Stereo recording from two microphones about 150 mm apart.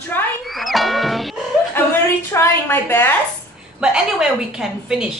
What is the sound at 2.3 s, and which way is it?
Speech, 15° left (ahead or behind).